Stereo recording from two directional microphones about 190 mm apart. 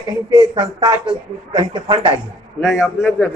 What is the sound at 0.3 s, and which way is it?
Speech, 20° right (ahead or behind).